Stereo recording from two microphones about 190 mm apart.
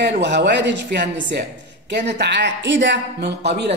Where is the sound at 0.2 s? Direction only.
65° right (ahead or behind).